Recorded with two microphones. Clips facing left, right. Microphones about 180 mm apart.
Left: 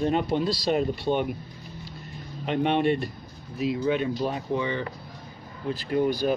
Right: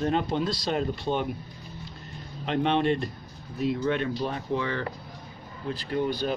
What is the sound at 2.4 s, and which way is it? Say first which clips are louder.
Speech: left 1 dB; 5° left (ahead or behind).